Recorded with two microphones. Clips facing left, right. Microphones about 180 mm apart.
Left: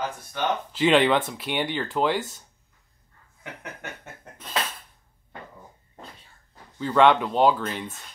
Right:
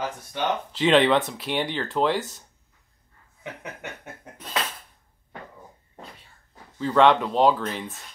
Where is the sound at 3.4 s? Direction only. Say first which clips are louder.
Right 2 dB; 20° right (ahead or behind).